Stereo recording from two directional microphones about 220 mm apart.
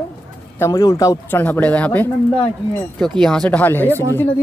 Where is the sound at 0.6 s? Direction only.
15° left (ahead or behind).